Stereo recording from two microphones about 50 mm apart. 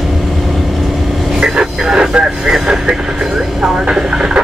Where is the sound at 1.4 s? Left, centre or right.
Centre.